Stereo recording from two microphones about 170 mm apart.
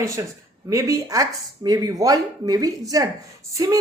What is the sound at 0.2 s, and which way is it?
A woman's voice, 20° right (ahead or behind).